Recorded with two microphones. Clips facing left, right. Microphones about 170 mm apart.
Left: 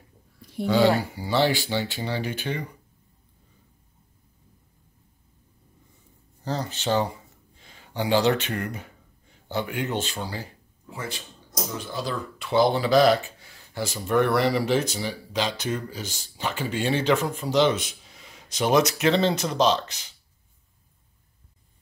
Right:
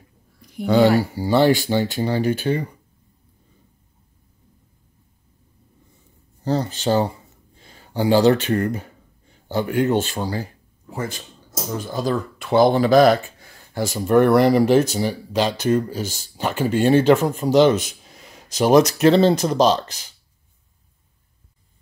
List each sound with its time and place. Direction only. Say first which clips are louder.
0.7 s speech: right 5 dB; 45° right (ahead or behind)
6.4 s speech: right 7 dB; 35° right (ahead or behind)